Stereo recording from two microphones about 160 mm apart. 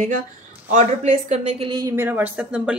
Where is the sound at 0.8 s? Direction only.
45° right (ahead or behind); by 2.8 s 5° right (ahead or behind).